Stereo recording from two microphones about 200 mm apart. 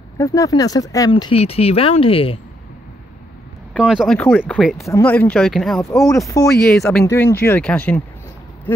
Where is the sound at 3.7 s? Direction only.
5° right (ahead or behind).